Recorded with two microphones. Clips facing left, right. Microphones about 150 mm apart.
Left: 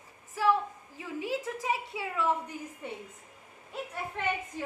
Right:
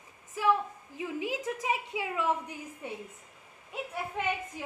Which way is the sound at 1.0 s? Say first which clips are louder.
Even; 20° right (ahead or behind).